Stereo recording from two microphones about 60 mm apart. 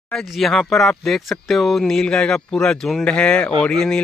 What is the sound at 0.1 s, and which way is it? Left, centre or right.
Speech, centre.